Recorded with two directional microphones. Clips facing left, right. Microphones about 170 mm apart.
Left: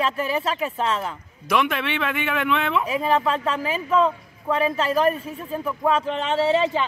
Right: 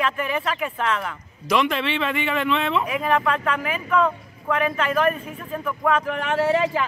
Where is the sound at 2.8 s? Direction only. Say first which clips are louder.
Even; 30° left (ahead or behind).